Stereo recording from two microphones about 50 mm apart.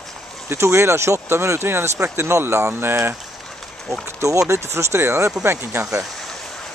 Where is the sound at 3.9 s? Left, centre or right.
Right.